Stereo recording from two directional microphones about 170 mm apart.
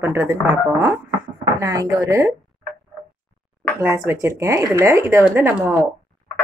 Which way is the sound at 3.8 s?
15° right (ahead or behind).